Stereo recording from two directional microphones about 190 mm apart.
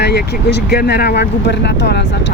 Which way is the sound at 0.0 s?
60° left (ahead or behind).